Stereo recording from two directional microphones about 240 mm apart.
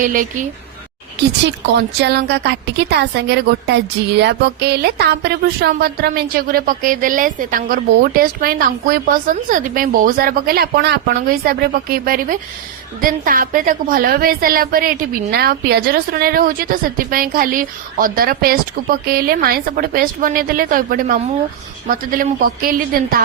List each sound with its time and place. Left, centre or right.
0.0 s a woman's voice: right
1.5 s a woman's voice: right